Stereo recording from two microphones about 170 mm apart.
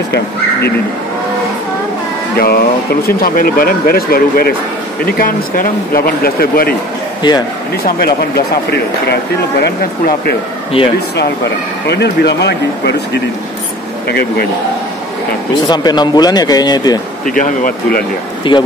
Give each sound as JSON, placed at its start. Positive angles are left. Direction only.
{"t": 0.1, "sound": "speech", "side_deg": 75}
{"t": 2.3, "sound": "speech", "side_deg": 65}
{"t": 7.2, "sound": "speech", "side_deg": 25}
{"t": 8.4, "sound": "speech", "side_deg": 70}
{"t": 10.8, "sound": "speech", "side_deg": 30}
{"t": 11.9, "sound": "speech", "side_deg": 80}
{"t": 15.5, "sound": "speech", "side_deg": 25}
{"t": 17.3, "sound": "speech", "side_deg": 55}
{"t": 18.5, "sound": "speech", "side_deg": 25}